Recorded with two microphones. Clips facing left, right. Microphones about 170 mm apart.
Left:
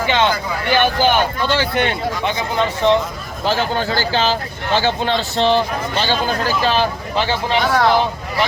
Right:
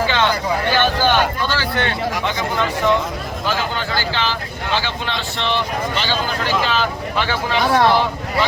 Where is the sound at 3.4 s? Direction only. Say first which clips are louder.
Left 5 dB; 35° left (ahead or behind).